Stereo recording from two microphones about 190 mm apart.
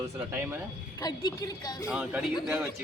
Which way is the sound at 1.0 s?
20° left (ahead or behind).